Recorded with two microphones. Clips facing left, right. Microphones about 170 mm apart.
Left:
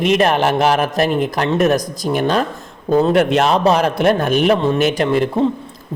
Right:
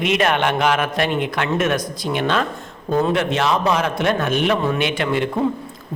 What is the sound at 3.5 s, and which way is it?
A man's voice, 35° left (ahead or behind).